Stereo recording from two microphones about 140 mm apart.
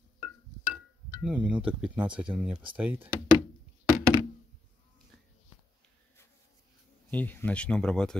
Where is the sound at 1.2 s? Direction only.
10° right (ahead or behind).